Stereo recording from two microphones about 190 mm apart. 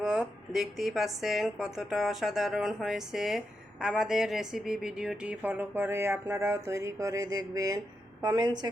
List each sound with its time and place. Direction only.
0.0 s a woman's voice: 5° right (ahead or behind); by 8.7 s 20° right (ahead or behind)